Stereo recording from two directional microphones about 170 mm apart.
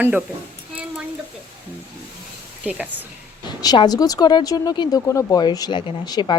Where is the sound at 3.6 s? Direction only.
25° left (ahead or behind).